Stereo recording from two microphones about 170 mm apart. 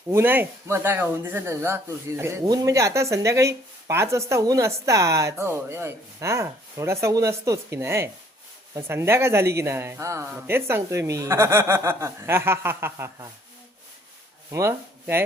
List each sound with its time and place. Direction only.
0.1 s speech: 15° right (ahead or behind)
14.5 s speech: 15° right (ahead or behind)